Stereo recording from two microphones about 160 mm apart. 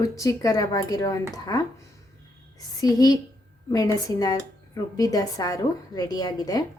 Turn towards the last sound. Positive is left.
turn(degrees=25)  # may be behind; listen again after turning